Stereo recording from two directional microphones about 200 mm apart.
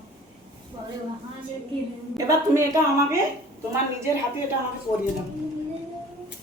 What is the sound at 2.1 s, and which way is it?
Speech, 20° right (ahead or behind).